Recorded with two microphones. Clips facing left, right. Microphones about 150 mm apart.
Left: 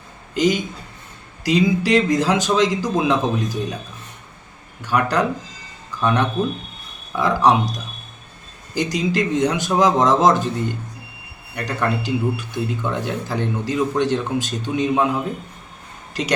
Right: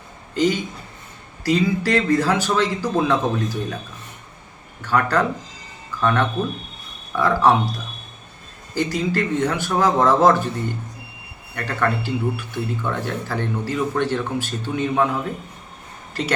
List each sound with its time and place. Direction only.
0.3 s speech: 15° left (ahead or behind)
4.8 s speech: 15° left (ahead or behind)